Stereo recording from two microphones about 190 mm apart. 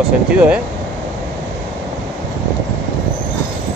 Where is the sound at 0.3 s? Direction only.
5° right (ahead or behind).